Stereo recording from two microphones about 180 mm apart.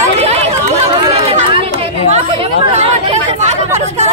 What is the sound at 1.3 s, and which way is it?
Chatter, 35° right (ahead or behind).